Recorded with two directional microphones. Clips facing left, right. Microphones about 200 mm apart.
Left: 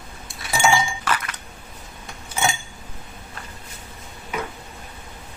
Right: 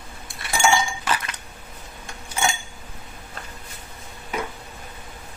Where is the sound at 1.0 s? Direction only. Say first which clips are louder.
Left 1 dB; 20° right (ahead or behind).